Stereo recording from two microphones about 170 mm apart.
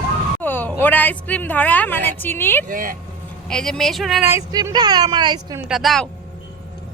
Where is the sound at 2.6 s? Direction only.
50° right (ahead or behind).